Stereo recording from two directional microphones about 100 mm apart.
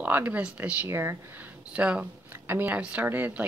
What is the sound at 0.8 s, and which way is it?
Speech, 25° right (ahead or behind).